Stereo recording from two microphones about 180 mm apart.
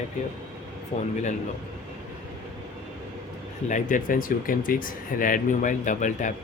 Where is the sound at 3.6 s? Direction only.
45° left (ahead or behind).